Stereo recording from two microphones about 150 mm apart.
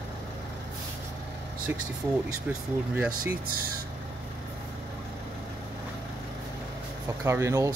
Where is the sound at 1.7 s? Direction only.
15° right (ahead or behind).